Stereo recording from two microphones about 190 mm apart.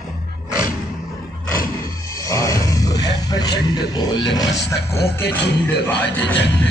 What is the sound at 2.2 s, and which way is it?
Roaring cats, 15° left (ahead or behind).